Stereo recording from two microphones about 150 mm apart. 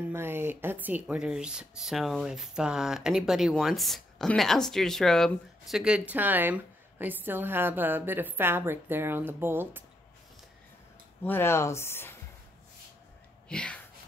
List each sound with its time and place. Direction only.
0.0 s speech: 15° right (ahead or behind)
11.2 s speech: 15° left (ahead or behind)
13.5 s speech: 5° left (ahead or behind)